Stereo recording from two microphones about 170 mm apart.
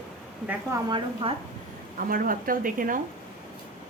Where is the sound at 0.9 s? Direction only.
30° right (ahead or behind).